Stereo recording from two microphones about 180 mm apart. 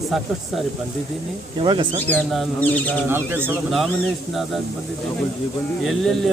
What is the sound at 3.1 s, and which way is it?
Speech, 10° right (ahead or behind).